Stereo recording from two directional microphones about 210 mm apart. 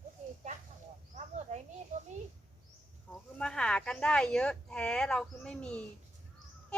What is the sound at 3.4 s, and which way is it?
Speech, 5° left (ahead or behind).